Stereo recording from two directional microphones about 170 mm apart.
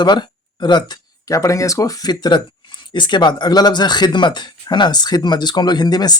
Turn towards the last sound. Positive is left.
turn(degrees=25)  # may be behind; listen again after turning